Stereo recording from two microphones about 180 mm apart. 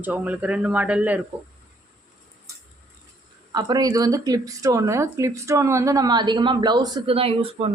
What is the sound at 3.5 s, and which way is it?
A woman's voice, 20° right (ahead or behind).